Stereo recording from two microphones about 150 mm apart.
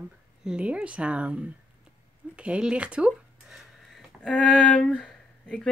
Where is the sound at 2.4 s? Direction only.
5° right (ahead or behind).